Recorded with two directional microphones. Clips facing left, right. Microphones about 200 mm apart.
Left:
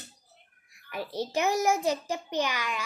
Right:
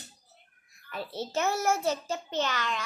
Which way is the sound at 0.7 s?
15° left (ahead or behind).